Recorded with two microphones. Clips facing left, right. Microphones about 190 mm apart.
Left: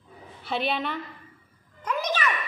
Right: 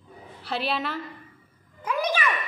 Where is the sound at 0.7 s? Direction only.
5° right (ahead or behind).